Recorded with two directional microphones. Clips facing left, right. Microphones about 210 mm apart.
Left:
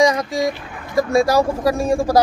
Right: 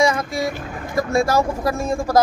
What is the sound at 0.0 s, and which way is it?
A man's voice, 15° left (ahead or behind).